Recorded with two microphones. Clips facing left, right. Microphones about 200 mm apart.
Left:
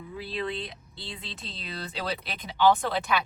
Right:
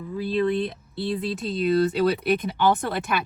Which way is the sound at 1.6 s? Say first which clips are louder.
Right 15 dB; 55° right (ahead or behind).